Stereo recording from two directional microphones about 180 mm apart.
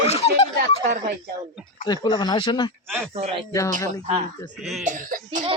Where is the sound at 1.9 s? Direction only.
25° left (ahead or behind).